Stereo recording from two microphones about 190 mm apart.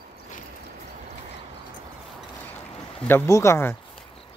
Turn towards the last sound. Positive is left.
turn(degrees=15)  # may be behind; listen again after turning